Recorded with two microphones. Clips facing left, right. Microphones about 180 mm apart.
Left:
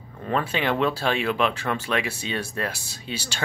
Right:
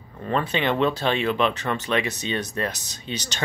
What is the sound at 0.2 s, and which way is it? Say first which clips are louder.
Speech: right 1 dB; 5° left (ahead or behind).